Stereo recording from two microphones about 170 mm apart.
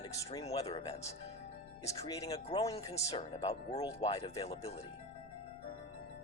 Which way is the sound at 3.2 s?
40° left (ahead or behind).